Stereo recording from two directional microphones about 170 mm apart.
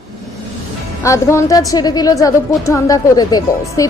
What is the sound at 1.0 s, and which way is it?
A woman's voice, 15° left (ahead or behind).